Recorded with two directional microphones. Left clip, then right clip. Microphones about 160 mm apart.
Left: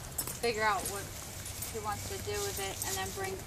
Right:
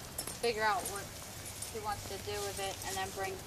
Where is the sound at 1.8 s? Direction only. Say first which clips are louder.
Left 1 dB; 50° left (ahead or behind).